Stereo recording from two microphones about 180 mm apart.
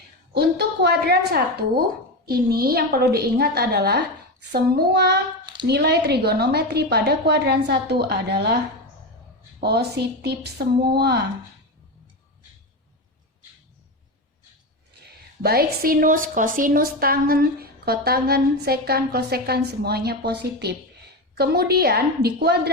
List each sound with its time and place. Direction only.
0.3 s a woman's voice: 65° right (ahead or behind)
9.6 s a woman's voice: 65° right (ahead or behind)
15.4 s a woman's voice: 55° right (ahead or behind)